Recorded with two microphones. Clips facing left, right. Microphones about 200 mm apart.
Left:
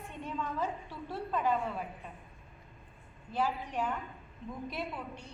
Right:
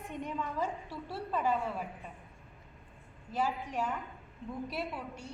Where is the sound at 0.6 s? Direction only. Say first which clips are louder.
Even; 10° right (ahead or behind).